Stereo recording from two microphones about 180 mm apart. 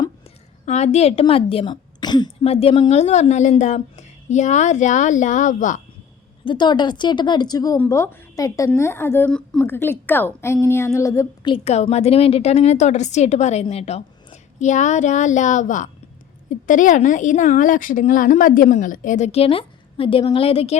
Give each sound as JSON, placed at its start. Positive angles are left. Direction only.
{"t": 0.6, "sound": "a woman's voice", "side_deg": 40}
{"t": 6.4, "sound": "a woman's voice", "side_deg": 25}
{"t": 11.5, "sound": "a woman's voice", "side_deg": 35}